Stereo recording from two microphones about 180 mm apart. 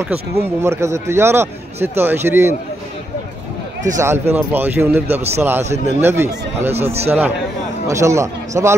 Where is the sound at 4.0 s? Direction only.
15° right (ahead or behind).